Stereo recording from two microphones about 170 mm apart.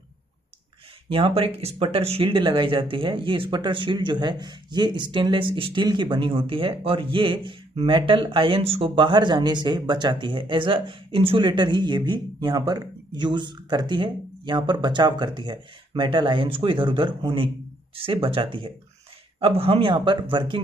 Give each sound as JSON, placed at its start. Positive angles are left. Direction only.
{"t": 1.1, "sound": "speech", "side_deg": -35}